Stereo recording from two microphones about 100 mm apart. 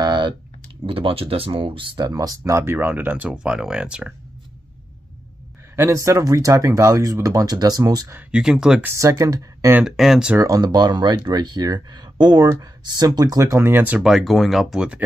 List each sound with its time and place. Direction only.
0.0 s typing: 45° right (ahead or behind)
0.8 s speech: 65° right (ahead or behind); by 2.6 s 35° right (ahead or behind)
2.6 s speech: 20° right (ahead or behind)
5.8 s speech: 30° right (ahead or behind)
8.3 s speech: 5° right (ahead or behind)
8.8 s speech: 30° right (ahead or behind)
9.8 s speech: 5° right (ahead or behind)
10.4 s speech: 40° right (ahead or behind); by 14.0 s 20° right (ahead or behind)
14.0 s speech: centre (ahead or behind)